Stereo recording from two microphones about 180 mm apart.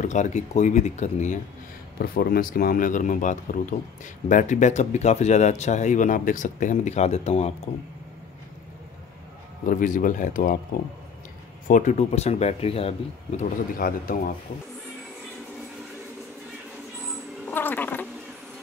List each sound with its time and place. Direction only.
0.0 s speech: 40° left (ahead or behind)
2.0 s a man's voice: 55° left (ahead or behind); by 7.7 s 35° left (ahead or behind)
9.7 s a man's voice: 45° left (ahead or behind)
11.6 s speech: 45° left (ahead or behind)
13.4 s a man's voice: 50° left (ahead or behind)
17.5 s a sound: 10° left (ahead or behind)